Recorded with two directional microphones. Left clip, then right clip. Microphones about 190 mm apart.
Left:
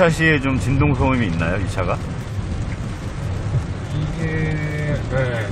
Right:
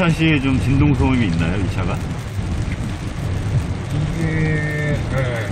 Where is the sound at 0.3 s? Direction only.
20° left (ahead or behind).